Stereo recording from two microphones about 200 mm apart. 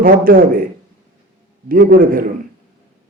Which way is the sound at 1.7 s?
45° right (ahead or behind).